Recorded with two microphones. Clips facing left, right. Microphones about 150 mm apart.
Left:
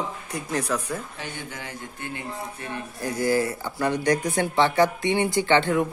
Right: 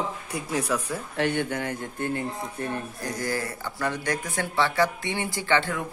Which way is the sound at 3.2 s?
10° left (ahead or behind).